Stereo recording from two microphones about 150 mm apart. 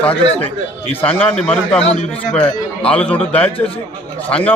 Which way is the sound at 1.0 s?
40° left (ahead or behind).